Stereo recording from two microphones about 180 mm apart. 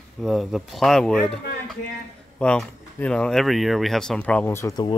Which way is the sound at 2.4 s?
5° left (ahead or behind).